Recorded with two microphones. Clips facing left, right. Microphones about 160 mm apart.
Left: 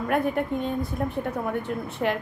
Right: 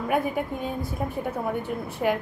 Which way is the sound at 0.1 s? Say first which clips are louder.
Left 2 dB; 5° right (ahead or behind).